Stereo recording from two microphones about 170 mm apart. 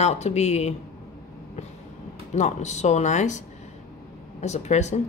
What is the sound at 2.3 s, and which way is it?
Speech, 45° left (ahead or behind).